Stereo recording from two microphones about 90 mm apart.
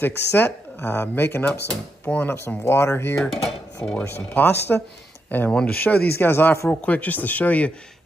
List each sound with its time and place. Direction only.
0.0 s speech: 25° left (ahead or behind)
1.7 s speech: 10° left (ahead or behind)
2.2 s speech: 25° left (ahead or behind)
3.3 s speech: 5° left (ahead or behind)
4.0 s speech: 25° left (ahead or behind)
6.7 s speech: 15° left (ahead or behind)